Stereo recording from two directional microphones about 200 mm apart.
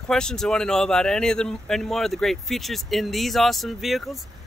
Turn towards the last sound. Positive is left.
turn(degrees=0)  # may be behind; listen again after turning